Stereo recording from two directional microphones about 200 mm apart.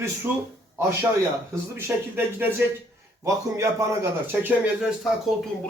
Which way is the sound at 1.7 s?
10° right (ahead or behind).